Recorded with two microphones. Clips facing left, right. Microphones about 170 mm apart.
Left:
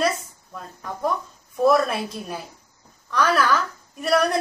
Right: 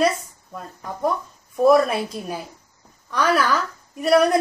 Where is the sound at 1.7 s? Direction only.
5° right (ahead or behind).